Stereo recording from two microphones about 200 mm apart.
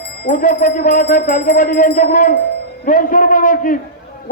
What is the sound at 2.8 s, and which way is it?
Speech, 40° left (ahead or behind).